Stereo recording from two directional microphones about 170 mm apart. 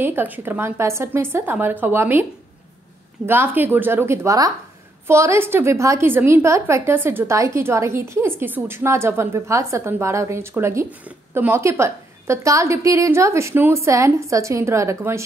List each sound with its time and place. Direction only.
0.0 s a woman's voice: 10° right (ahead or behind)
3.3 s a woman's voice: 10° right (ahead or behind)